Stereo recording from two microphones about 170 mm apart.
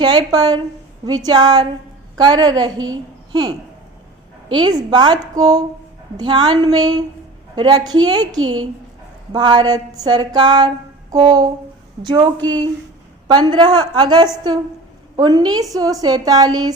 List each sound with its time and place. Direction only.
0.0 s a woman's voice: 25° right (ahead or behind)